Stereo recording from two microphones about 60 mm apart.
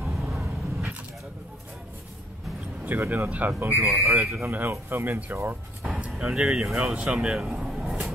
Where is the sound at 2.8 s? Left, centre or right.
Right.